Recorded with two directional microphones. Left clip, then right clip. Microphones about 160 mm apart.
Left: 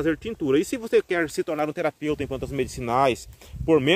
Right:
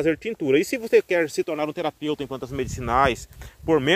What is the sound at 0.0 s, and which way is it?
Speech, centre (ahead or behind).